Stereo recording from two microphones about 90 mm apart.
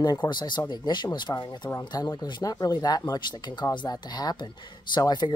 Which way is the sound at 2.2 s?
45° left (ahead or behind).